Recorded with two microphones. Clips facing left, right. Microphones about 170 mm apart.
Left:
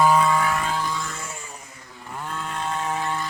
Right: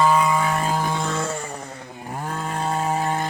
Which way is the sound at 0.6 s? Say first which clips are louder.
Right 4 dB; 50° right (ahead or behind).